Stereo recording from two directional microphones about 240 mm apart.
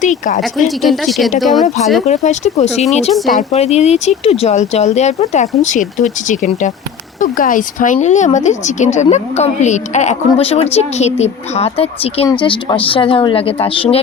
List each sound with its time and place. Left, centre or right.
0.0 s speech: left
0.8 s speech: centre
2.0 s speech: left
3.1 s speech: centre
3.5 s speech: left